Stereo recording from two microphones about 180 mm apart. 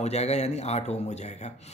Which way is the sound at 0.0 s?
35° left (ahead or behind).